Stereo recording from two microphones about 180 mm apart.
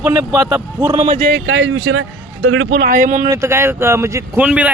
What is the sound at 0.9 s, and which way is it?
Speech, 40° right (ahead or behind).